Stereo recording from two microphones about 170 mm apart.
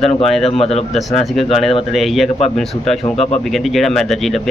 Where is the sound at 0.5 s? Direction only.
35° left (ahead or behind).